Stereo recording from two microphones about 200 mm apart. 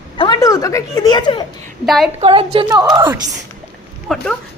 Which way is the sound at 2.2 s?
25° right (ahead or behind).